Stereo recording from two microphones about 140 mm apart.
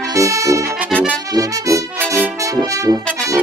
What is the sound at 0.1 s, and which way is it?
Brass instrument, 20° right (ahead or behind).